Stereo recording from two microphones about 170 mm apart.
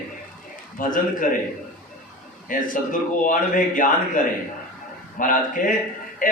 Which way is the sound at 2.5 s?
50° left (ahead or behind).